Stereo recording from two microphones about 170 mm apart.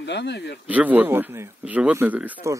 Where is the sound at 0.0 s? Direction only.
90° left.